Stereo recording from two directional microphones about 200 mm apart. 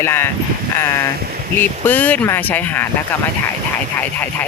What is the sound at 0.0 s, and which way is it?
Speech, 10° left (ahead or behind).